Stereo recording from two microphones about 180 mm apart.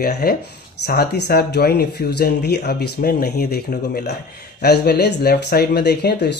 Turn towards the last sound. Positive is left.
turn(degrees=65)  # may be behind; listen again after turning